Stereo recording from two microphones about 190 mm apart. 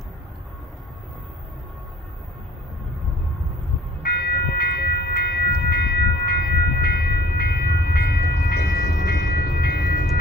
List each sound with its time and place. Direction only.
4.0 s train: 55° left (ahead or behind)